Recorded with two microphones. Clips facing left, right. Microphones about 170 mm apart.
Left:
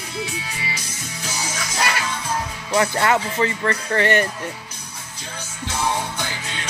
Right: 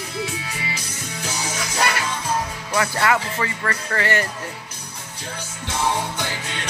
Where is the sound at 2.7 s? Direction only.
25° left (ahead or behind).